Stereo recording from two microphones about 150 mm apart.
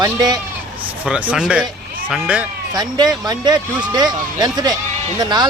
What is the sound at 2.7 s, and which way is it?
Speech, 25° right (ahead or behind).